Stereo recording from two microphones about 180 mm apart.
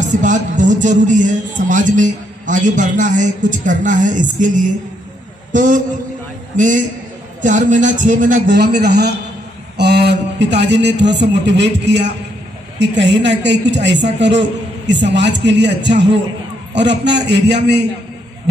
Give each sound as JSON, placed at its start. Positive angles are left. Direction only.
{"t": 0.1, "sound": "a man's voice", "side_deg": -45}
{"t": 8.5, "sound": "a man's voice", "side_deg": -65}